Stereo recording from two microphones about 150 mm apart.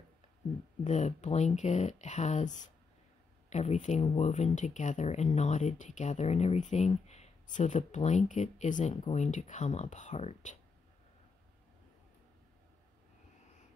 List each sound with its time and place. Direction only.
0.8 s speech: 50° left (ahead or behind)